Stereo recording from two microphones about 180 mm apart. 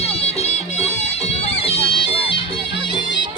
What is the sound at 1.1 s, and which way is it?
Bagpipes, 35° left (ahead or behind).